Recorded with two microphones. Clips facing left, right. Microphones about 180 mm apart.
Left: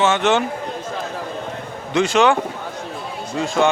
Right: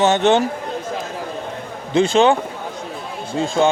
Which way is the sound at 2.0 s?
30° right (ahead or behind).